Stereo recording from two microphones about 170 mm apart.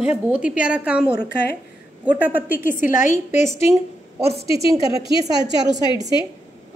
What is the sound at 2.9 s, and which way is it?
Speech, 45° left (ahead or behind).